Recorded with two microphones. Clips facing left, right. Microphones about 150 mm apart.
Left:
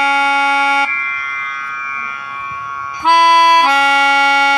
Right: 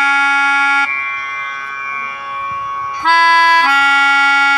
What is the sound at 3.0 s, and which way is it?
Music, 15° left (ahead or behind).